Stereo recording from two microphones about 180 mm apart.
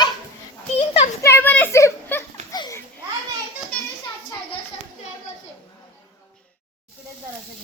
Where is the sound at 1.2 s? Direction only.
10° left (ahead or behind).